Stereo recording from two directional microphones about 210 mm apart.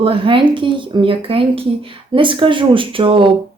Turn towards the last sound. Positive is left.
turn(degrees=-25)  # may be behind; listen again after turning